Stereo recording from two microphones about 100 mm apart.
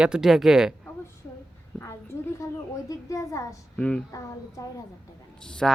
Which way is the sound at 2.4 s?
30° left (ahead or behind).